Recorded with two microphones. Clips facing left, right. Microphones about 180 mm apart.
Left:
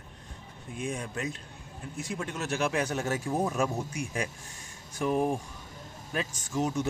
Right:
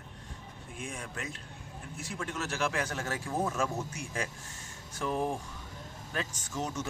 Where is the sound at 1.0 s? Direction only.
20° left (ahead or behind).